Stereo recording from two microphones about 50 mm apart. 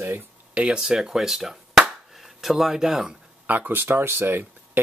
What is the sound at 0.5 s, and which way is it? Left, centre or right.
Speech, right.